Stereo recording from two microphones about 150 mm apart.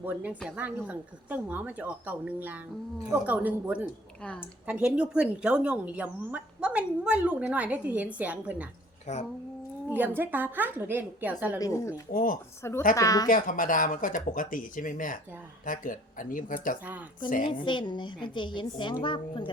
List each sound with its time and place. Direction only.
0.0 s a woman's voice: 10° right (ahead or behind)
9.1 s speech: 50° left (ahead or behind)
10.2 s a woman's voice: 10° right (ahead or behind)
11.6 s speech: 20° left (ahead or behind)
12.1 s speech: 65° left (ahead or behind)
12.6 s a woman's voice: 15° left (ahead or behind)
13.2 s speech: 65° left (ahead or behind)
16.8 s a woman's voice: 10° right (ahead or behind)
17.2 s speech: 65° left (ahead or behind)
17.5 s a woman's voice: 30° left (ahead or behind)